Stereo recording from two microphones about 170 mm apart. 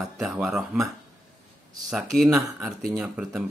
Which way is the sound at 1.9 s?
Centre (ahead or behind).